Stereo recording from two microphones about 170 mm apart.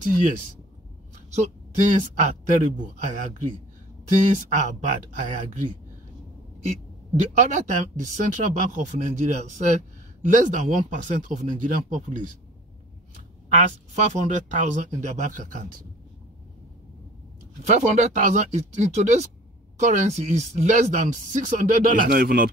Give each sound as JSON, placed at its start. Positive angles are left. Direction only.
{"t": 1.3, "sound": "speech", "side_deg": -45}
{"t": 6.7, "sound": "speech", "side_deg": -45}
{"t": 13.5, "sound": "speech", "side_deg": -45}
{"t": 17.6, "sound": "speech", "side_deg": -45}